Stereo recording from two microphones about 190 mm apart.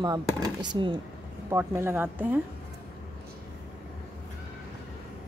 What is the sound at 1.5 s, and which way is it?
Speech, 15° right (ahead or behind).